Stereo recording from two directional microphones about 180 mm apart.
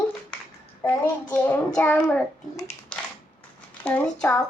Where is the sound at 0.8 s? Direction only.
10° left (ahead or behind).